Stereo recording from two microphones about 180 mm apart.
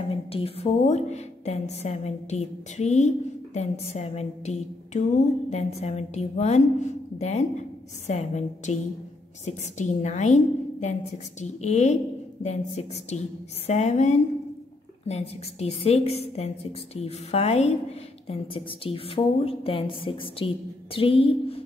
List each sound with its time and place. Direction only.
0.1 s a woman's voice: 30° left (ahead or behind)
8.7 s a woman's voice: 40° left (ahead or behind)